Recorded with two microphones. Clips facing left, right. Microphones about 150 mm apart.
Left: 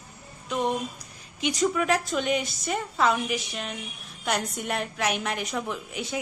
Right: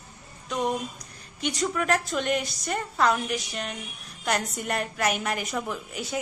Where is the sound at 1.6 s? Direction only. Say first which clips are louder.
Left 2 dB; centre (ahead or behind).